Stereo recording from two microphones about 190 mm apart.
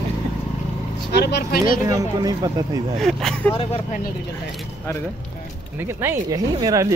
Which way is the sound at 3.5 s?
30° left (ahead or behind).